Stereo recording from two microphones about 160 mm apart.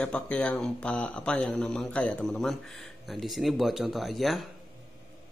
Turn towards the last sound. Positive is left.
turn(degrees=0)  # may be behind; listen again after turning